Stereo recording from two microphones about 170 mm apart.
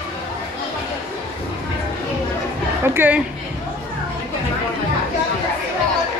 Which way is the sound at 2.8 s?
15° right (ahead or behind).